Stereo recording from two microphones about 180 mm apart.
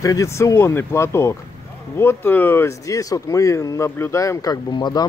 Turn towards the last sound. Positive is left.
turn(degrees=25)  # may be behind; listen again after turning